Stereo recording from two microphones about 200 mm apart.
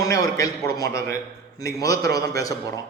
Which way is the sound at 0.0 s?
15° left (ahead or behind).